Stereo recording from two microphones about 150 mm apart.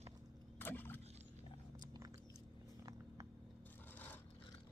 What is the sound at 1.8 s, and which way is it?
Biting, 25° right (ahead or behind).